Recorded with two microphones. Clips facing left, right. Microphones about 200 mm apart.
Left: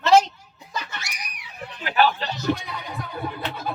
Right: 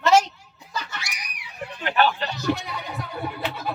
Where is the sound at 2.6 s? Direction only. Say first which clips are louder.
Right 1 dB; 50° left (ahead or behind).